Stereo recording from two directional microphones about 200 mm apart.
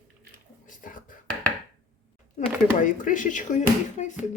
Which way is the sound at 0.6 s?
40° left (ahead or behind).